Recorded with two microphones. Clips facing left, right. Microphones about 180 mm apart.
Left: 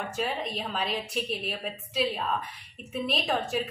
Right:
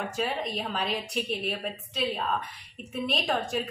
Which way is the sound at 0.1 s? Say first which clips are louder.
Right 1 dB; centre (ahead or behind).